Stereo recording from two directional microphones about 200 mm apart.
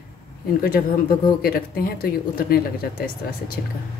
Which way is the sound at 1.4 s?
50° left (ahead or behind).